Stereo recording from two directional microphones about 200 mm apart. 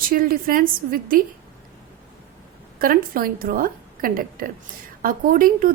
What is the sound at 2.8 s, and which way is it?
A woman's voice, 45° right (ahead or behind).